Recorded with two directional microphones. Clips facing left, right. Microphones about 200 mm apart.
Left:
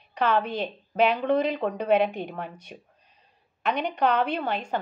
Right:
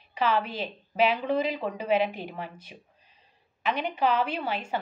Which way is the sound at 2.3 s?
55° left (ahead or behind).